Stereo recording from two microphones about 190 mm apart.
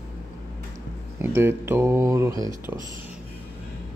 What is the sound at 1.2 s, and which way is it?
Speech, 10° right (ahead or behind).